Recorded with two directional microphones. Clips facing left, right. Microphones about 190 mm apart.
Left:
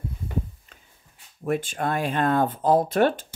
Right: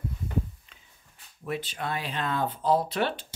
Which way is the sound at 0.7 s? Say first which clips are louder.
Left 5 dB; 45° left (ahead or behind).